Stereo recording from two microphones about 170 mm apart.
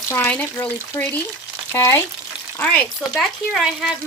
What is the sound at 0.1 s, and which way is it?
Speech, 10° left (ahead or behind).